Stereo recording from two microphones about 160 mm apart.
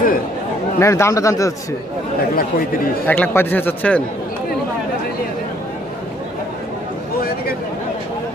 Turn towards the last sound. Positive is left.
turn(degrees=70)  # may be behind; listen again after turning